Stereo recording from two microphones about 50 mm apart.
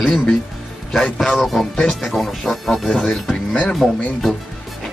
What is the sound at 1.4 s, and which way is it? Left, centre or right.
Speech, centre.